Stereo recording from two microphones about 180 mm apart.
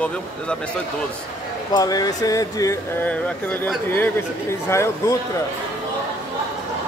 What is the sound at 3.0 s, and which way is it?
Speech, 10° left (ahead or behind).